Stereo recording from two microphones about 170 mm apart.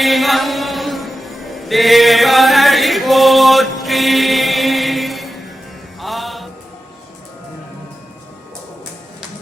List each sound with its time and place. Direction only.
0.0 s music: centre (ahead or behind)